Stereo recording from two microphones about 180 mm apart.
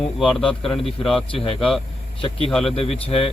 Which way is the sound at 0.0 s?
Centre (ahead or behind).